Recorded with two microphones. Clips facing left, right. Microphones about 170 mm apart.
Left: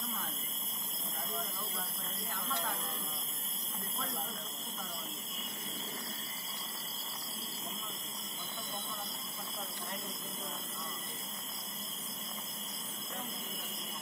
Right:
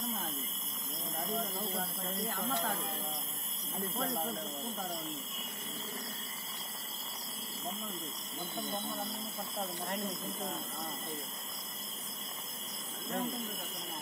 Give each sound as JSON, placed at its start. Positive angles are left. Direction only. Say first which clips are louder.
{"t": 1.3, "sound": "a sound", "louder": "right 6 dB", "side_deg": -55}
{"t": 4.0, "sound": "speech", "louder": "right 6 dB", "side_deg": -35}
{"t": 9.6, "sound": "speech", "louder": "right 7 dB", "side_deg": -60}